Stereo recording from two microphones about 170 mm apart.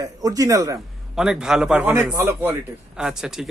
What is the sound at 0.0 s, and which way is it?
Speech, 20° right (ahead or behind).